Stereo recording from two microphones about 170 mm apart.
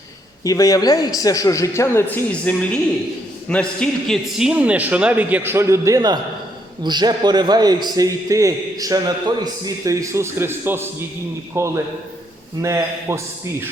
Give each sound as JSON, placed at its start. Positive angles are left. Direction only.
{"t": 0.4, "sound": "a man's voice", "side_deg": 20}